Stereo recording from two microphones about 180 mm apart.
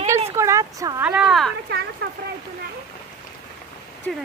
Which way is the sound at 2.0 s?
55° right (ahead or behind).